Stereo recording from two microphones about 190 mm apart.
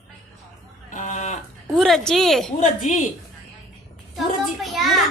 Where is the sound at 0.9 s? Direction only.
40° left (ahead or behind).